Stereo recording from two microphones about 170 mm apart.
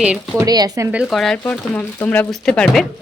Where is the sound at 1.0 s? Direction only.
Centre (ahead or behind).